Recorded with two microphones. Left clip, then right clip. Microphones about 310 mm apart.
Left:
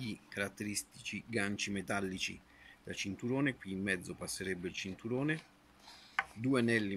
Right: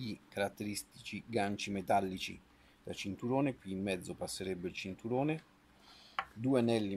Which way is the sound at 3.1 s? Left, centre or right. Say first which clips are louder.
Right 4 dB; right.